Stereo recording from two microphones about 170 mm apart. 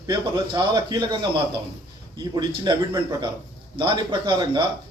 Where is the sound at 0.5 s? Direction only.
25° right (ahead or behind).